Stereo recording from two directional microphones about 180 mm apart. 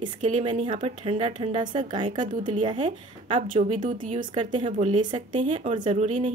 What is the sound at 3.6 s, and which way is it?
Speech, 40° right (ahead or behind).